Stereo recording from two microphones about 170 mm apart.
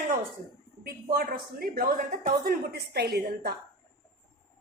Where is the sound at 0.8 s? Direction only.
60° right (ahead or behind).